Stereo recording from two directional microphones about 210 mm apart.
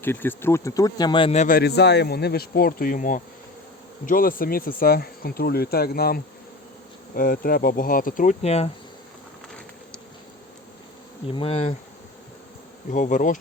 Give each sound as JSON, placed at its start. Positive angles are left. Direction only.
{"t": 0.0, "sound": "speech", "side_deg": 10}
{"t": 11.3, "sound": "insect", "side_deg": 25}
{"t": 12.9, "sound": "speech", "side_deg": 35}